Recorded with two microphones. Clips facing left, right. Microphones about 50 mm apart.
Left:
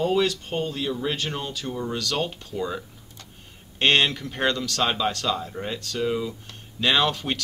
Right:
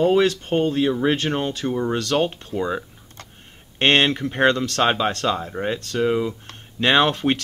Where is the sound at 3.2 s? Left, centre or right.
Right.